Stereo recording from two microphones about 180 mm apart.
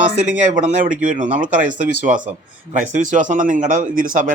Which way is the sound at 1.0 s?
45° right (ahead or behind).